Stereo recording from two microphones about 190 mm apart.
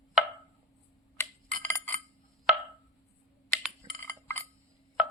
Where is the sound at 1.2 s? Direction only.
10° left (ahead or behind).